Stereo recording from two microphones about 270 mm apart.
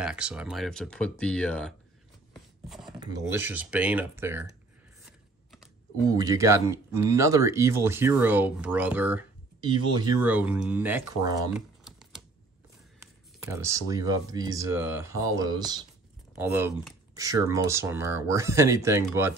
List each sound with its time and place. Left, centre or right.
0.0 s speech: centre
3.0 s speech: centre
6.0 s speech: centre
9.7 s speech: centre
10.2 s speech: centre
11.5 s typing: centre
13.0 s speech: centre